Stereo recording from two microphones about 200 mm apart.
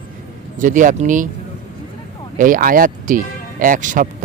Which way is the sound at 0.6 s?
40° right (ahead or behind).